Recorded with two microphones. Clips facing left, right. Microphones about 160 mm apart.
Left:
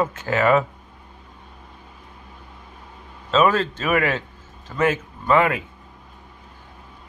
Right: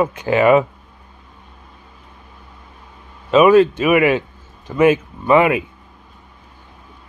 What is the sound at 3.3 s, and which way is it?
Speech, 10° right (ahead or behind).